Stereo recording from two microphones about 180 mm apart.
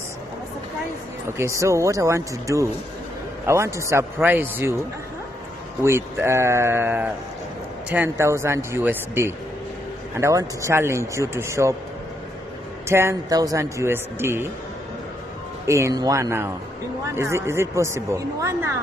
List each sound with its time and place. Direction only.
1.4 s a man's voice: 15° right (ahead or behind)
5.9 s a man's voice: 15° right (ahead or behind)
12.8 s a man's voice: 15° right (ahead or behind)
15.6 s a man's voice: 15° right (ahead or behind)